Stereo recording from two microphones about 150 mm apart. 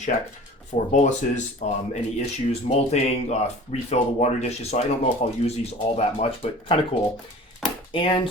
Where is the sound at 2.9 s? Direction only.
45° left (ahead or behind).